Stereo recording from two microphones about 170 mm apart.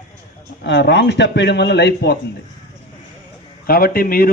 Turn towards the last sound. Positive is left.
turn(degrees=60)  # may be behind; listen again after turning